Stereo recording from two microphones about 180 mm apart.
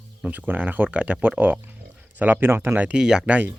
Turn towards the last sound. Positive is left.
turn(degrees=-10)  # may be behind; listen again after turning